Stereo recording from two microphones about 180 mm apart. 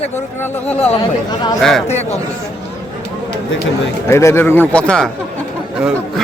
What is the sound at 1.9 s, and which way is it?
Speech, 40° left (ahead or behind).